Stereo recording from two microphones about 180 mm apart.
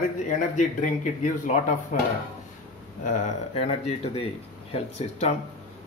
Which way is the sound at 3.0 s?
35° left (ahead or behind).